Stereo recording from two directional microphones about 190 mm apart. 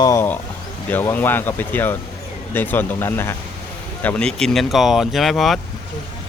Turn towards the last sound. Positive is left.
turn(degrees=0)  # may be behind; listen again after turning